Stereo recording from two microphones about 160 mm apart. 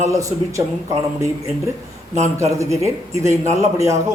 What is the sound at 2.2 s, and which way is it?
Speech, 20° right (ahead or behind).